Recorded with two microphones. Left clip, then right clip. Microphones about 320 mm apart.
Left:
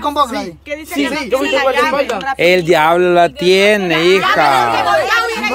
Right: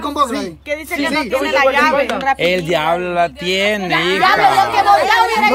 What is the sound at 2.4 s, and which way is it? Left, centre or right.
Speech, centre.